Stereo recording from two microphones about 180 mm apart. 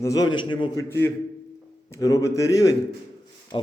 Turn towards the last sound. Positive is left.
turn(degrees=30)  # may be behind; listen again after turning